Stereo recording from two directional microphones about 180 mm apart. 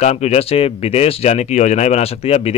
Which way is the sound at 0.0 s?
40° left (ahead or behind).